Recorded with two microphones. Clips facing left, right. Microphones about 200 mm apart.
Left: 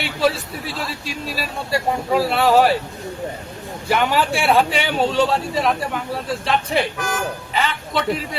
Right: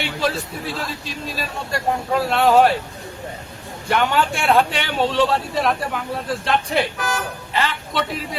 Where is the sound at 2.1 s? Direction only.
5° left (ahead or behind).